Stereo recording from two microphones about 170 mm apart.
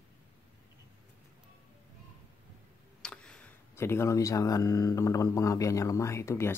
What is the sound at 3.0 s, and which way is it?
Speech, 5° left (ahead or behind).